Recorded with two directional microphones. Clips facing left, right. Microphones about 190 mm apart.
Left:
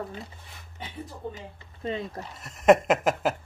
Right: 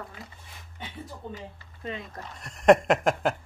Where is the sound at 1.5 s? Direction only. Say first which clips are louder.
Left 5 dB; 30° left (ahead or behind).